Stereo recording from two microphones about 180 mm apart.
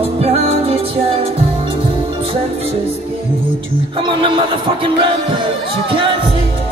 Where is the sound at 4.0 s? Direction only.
25° right (ahead or behind).